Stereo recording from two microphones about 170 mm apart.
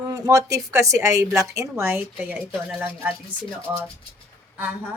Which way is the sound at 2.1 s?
5° right (ahead or behind).